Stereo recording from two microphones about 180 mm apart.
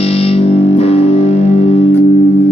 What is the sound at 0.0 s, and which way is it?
Music, 35° left (ahead or behind).